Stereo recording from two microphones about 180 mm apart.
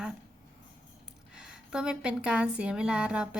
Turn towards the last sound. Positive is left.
turn(degrees=-5)  # may be behind; listen again after turning